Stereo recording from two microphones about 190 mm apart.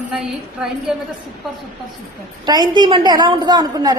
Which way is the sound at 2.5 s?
20° right (ahead or behind).